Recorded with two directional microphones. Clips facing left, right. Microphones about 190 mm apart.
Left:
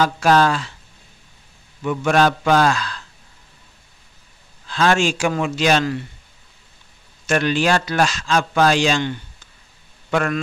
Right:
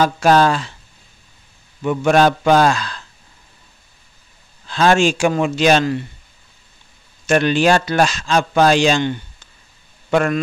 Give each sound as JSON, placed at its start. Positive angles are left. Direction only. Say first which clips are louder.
{"t": 0.0, "sound": "speech", "louder": "right 2 dB", "side_deg": -25}
{"t": 1.8, "sound": "speech", "louder": "right 3 dB", "side_deg": -25}
{"t": 4.6, "sound": "speech", "louder": "right 3 dB", "side_deg": -25}
{"t": 7.2, "sound": "speech", "louder": "right 4 dB", "side_deg": -20}
{"t": 10.1, "sound": "speech", "louder": "right 4 dB", "side_deg": -25}